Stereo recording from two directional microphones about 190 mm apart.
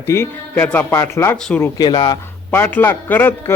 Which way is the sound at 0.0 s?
15° left (ahead or behind).